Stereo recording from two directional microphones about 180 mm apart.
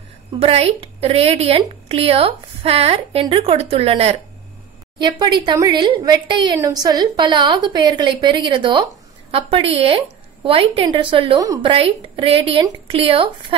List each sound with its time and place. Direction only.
0.4 s a woman's voice: 35° right (ahead or behind); by 11.7 s 20° right (ahead or behind)
11.7 s a woman's voice: 30° right (ahead or behind)